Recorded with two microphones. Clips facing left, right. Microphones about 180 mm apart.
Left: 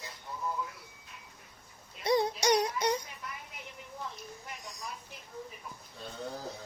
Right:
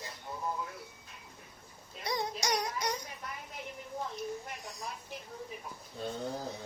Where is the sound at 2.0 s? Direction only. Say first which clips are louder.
Left 7 dB; 30° left (ahead or behind).